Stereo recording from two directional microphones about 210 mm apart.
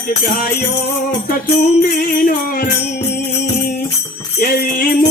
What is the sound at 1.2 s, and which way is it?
Music, 40° left (ahead or behind).